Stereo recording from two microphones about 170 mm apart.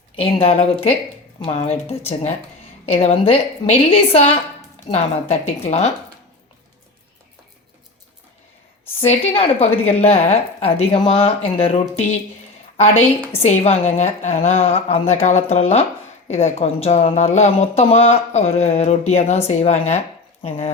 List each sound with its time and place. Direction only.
0.2 s speech: 35° left (ahead or behind)
9.0 s speech: 35° left (ahead or behind)
13.3 s speech: 40° left (ahead or behind)